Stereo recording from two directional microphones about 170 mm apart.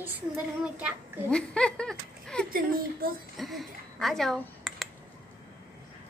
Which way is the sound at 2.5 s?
60° right (ahead or behind).